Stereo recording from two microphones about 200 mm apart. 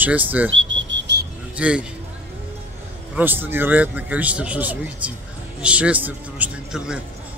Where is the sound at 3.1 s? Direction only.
10° right (ahead or behind).